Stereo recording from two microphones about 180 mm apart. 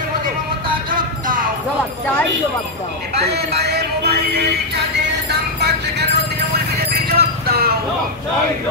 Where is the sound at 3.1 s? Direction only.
65° right (ahead or behind).